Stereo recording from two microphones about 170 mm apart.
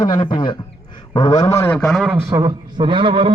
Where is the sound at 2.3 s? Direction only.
25° right (ahead or behind).